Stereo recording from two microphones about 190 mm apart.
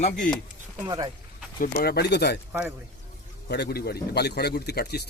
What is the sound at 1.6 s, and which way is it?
Speech, 55° left (ahead or behind).